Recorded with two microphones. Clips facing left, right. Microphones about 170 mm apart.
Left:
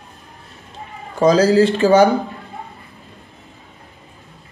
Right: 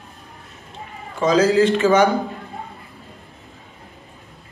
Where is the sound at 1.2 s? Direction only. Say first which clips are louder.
Left 3 dB; 35° left (ahead or behind).